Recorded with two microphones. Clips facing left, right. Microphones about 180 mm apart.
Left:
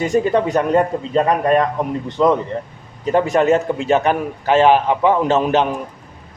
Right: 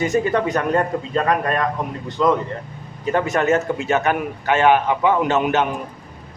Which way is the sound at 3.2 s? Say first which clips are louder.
Left 3 dB; 35° left (ahead or behind).